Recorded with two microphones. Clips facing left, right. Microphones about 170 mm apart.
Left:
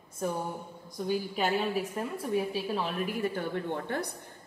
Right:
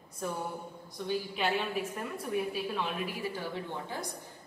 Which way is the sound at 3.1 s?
55° left (ahead or behind).